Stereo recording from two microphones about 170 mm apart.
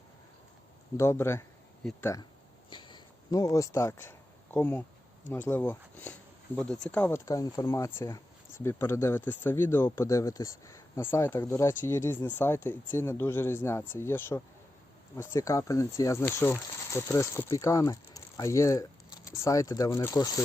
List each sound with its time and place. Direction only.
0.9 s speech: 15° left (ahead or behind)
1.8 s speech: 5° left (ahead or behind)
2.6 s a sound: 25° left (ahead or behind)
5.3 s speech: 10° left (ahead or behind)
7.3 s speech: 20° left (ahead or behind)